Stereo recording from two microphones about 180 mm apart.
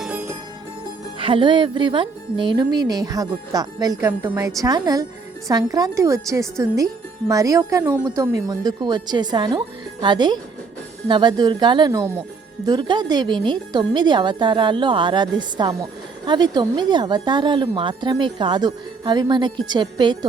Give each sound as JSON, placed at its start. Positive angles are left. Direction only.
{"t": 0.0, "sound": "music", "side_deg": -10}
{"t": 1.2, "sound": "speech", "side_deg": -25}